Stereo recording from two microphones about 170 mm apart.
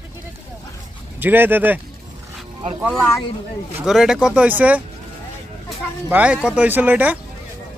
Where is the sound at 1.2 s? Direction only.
10° right (ahead or behind).